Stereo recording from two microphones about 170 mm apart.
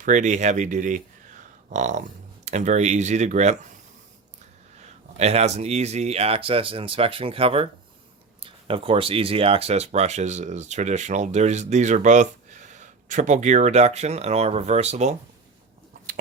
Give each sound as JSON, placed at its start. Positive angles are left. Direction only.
{"t": 0.0, "sound": "speech", "side_deg": -45}
{"t": 5.1, "sound": "speech", "side_deg": -40}